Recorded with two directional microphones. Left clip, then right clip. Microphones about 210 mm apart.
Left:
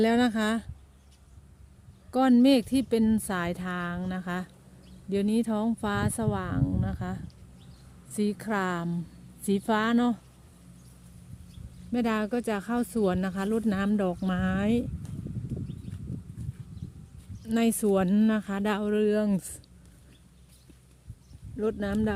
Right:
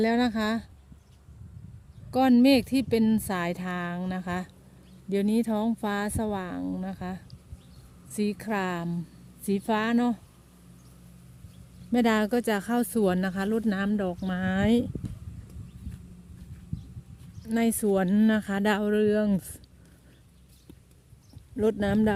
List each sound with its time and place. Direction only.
0.0 s speech: centre (ahead or behind)
2.0 s speech: 5° right (ahead or behind)
11.9 s speech: 15° right (ahead or behind)
17.4 s speech: centre (ahead or behind)
21.5 s speech: 30° right (ahead or behind)